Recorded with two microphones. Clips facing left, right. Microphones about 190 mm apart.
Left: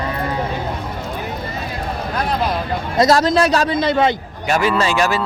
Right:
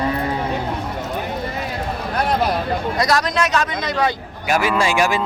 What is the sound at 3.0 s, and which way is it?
A man's voice, 25° left (ahead or behind).